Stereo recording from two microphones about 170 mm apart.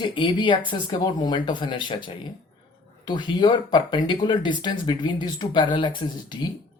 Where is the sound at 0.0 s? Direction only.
30° left (ahead or behind).